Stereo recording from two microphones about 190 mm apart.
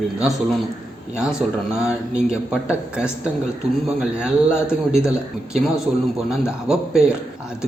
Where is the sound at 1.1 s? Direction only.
5° right (ahead or behind).